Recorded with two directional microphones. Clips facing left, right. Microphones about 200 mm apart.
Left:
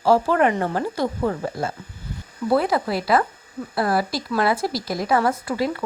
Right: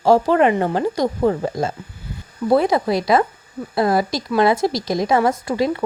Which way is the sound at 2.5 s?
20° right (ahead or behind).